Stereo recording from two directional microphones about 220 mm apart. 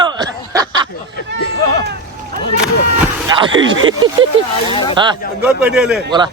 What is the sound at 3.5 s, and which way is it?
Speech, 60° right (ahead or behind).